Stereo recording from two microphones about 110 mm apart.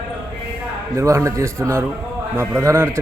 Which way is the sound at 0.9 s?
30° right (ahead or behind).